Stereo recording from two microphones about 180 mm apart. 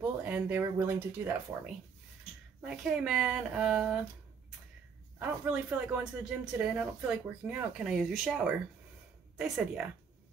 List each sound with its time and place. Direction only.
0.0 s speech: 10° right (ahead or behind)
2.6 s speech: 5° right (ahead or behind)
5.2 s speech: 10° right (ahead or behind)